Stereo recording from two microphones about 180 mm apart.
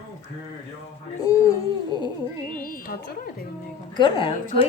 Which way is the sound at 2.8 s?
50° left (ahead or behind).